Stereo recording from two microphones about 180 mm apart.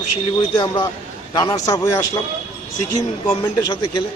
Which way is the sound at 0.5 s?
25° left (ahead or behind).